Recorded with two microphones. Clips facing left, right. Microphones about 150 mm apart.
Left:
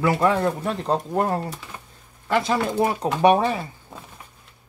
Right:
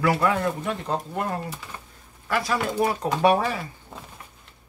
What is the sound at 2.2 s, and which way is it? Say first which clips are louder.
Speech: left 3 dB; 20° left (ahead or behind).